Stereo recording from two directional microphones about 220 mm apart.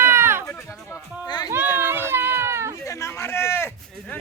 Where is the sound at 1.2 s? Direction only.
20° left (ahead or behind).